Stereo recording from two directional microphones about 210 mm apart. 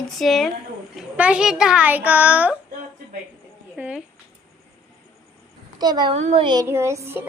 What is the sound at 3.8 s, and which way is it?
Speech, 5° right (ahead or behind).